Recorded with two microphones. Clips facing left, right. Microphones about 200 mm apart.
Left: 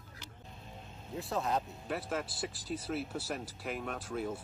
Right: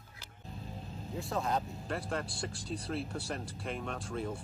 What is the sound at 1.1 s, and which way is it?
Speech, centre (ahead or behind).